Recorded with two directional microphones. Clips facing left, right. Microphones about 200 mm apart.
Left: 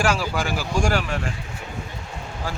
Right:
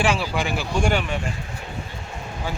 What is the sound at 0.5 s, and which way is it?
Speech, 10° left (ahead or behind).